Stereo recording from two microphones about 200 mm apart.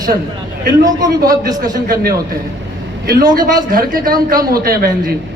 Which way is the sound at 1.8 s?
50° right (ahead or behind).